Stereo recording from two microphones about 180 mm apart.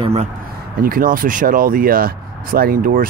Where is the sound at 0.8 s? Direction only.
50° right (ahead or behind).